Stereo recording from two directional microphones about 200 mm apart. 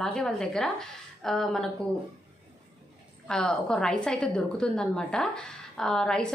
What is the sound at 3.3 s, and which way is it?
A woman's voice, 5° left (ahead or behind).